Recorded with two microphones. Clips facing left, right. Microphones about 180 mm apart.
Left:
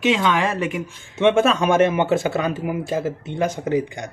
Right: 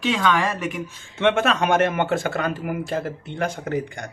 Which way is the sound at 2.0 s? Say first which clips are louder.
Left 3 dB; 25° left (ahead or behind).